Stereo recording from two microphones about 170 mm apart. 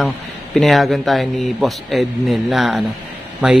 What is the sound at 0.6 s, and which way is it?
Speech, centre (ahead or behind).